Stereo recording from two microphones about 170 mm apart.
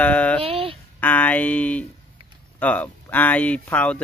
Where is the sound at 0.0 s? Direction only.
10° left (ahead or behind).